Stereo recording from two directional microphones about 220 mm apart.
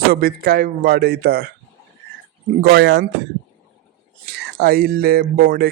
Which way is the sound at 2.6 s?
50° right (ahead or behind).